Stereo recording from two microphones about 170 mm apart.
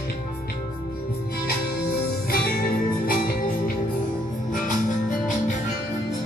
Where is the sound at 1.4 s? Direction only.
65° left (ahead or behind); by 5.6 s 50° left (ahead or behind).